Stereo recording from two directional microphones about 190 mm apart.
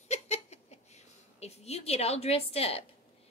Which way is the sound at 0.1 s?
35° left (ahead or behind).